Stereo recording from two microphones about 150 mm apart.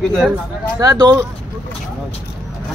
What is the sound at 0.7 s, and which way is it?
Speech, 25° right (ahead or behind).